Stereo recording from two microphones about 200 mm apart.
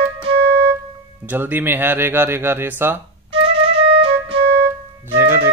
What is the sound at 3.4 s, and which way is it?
Music, 30° right (ahead or behind).